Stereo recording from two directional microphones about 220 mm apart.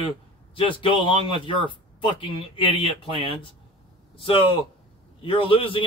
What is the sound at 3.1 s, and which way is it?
Speech, 25° right (ahead or behind).